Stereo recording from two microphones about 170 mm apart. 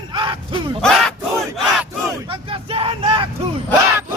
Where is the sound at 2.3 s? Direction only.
30° right (ahead or behind).